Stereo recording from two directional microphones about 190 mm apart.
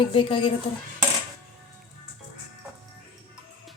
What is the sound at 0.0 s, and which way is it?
Speech, 25° left (ahead or behind).